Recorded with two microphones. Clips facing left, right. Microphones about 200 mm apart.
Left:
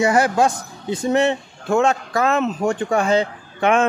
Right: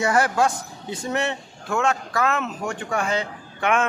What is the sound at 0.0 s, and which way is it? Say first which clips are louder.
A man's voice: left 4 dB; 15° left (ahead or behind).